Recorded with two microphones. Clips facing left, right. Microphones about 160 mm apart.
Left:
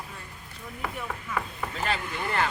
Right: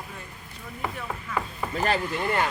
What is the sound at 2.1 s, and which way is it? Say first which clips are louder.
Speech: right 3 dB; 10° right (ahead or behind).